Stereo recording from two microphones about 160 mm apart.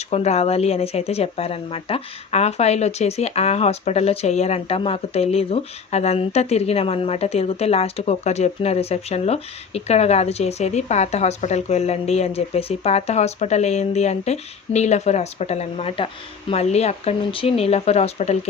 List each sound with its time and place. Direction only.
0.1 s speech: 40° left (ahead or behind)